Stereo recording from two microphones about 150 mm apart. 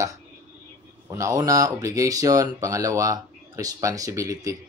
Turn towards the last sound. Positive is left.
turn(degrees=-20)  # may be behind; listen again after turning